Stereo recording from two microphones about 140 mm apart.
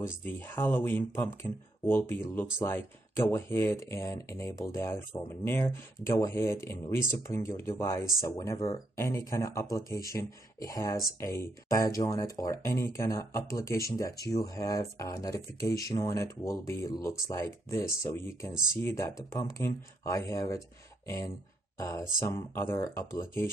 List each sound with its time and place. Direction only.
0.0 s speech: 15° left (ahead or behind)
21.7 s speech: 25° left (ahead or behind)